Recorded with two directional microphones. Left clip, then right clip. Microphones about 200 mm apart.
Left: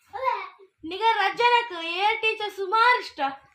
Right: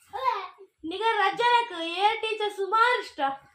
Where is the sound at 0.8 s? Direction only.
50° left (ahead or behind).